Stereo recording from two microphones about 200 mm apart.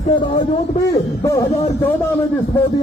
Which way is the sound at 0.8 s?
15° left (ahead or behind).